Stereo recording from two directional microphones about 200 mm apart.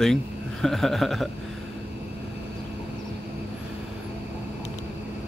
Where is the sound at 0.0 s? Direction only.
Centre (ahead or behind).